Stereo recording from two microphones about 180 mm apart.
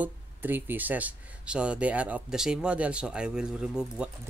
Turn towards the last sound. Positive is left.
turn(degrees=-5)  # may be behind; listen again after turning